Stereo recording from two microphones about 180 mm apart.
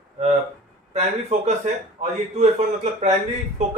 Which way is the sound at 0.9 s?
40° right (ahead or behind).